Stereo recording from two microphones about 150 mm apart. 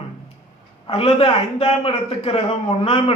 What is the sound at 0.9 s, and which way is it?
A man's voice, 35° left (ahead or behind).